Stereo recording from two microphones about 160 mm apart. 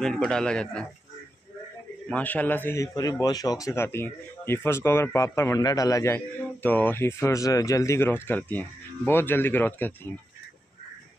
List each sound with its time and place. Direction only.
0.0 s a man's voice: 5° left (ahead or behind)
2.0 s a man's voice: 10° left (ahead or behind)